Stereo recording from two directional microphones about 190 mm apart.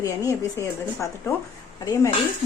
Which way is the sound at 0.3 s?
15° left (ahead or behind).